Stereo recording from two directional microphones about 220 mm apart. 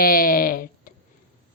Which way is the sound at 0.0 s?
40° left (ahead or behind).